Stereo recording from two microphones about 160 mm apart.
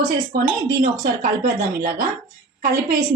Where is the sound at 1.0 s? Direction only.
60° right (ahead or behind).